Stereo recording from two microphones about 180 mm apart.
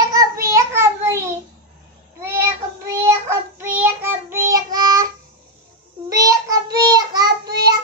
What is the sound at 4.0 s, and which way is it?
Child singing, 15° right (ahead or behind).